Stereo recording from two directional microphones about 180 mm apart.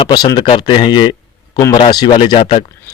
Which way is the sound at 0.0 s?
20° left (ahead or behind).